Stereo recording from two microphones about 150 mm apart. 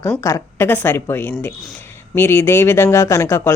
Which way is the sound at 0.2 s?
20° left (ahead or behind).